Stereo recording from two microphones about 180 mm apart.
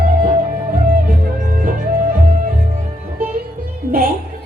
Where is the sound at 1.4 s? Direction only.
50° right (ahead or behind).